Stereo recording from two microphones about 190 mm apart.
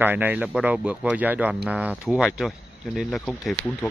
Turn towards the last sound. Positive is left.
turn(degrees=5)  # may be behind; listen again after turning